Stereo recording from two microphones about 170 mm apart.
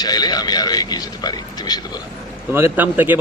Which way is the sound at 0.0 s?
25° left (ahead or behind).